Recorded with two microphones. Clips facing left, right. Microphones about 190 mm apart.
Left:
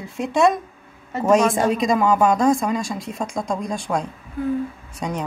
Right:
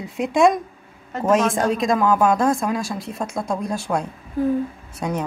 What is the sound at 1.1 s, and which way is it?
Speech, centre (ahead or behind).